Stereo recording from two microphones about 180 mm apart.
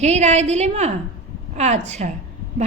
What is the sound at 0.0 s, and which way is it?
A woman's voice, 40° right (ahead or behind).